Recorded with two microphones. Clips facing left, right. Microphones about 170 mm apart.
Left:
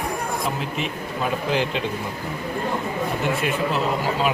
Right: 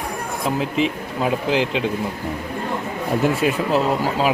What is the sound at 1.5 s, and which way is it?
Speech, 90° right.